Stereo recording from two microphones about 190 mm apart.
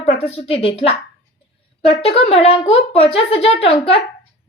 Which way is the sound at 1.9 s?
30° left (ahead or behind).